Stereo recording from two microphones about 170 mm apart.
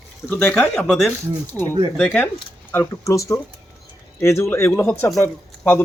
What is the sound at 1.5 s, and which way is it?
Speech, 15° left (ahead or behind).